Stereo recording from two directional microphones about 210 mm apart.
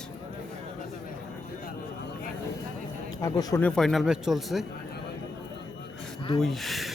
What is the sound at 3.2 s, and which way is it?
Speech, 15° left (ahead or behind).